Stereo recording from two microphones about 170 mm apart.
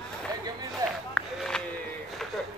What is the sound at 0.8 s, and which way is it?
Run, 20° right (ahead or behind).